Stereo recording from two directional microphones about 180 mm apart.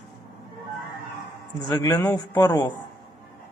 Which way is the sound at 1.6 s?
15° left (ahead or behind).